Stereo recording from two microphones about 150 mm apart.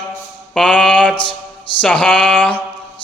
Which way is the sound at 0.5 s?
Centre (ahead or behind).